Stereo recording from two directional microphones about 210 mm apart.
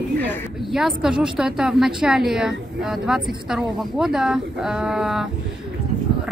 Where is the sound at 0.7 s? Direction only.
5° right (ahead or behind).